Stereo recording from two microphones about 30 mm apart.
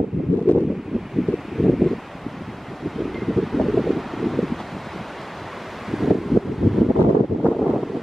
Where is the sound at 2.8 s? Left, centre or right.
Centre.